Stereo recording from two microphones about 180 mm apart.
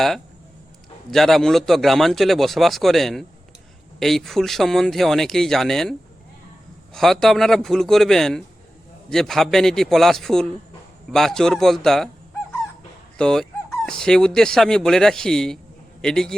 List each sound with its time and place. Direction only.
1.1 s speech: centre (ahead or behind)
13.1 s a man's voice: 5° left (ahead or behind)